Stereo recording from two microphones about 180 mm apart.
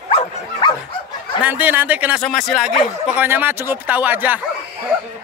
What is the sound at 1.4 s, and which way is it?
Speech, 10° right (ahead or behind).